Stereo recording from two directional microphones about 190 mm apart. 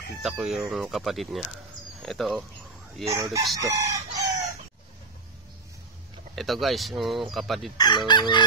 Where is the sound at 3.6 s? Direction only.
15° right (ahead or behind).